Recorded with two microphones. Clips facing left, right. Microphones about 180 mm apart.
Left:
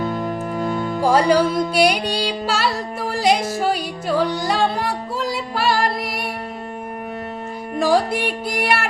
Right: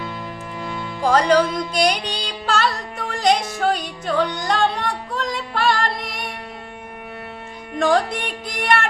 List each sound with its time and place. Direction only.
0.0 s music: 45° left (ahead or behind)
1.0 s music: 10° left (ahead or behind)
7.8 s music: 5° left (ahead or behind)